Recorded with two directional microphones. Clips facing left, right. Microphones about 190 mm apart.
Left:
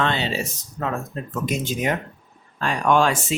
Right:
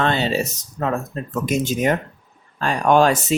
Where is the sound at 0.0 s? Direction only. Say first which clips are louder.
Right 4 dB; 45° right (ahead or behind).